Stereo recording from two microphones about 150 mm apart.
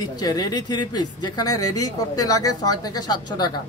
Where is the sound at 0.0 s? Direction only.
25° left (ahead or behind).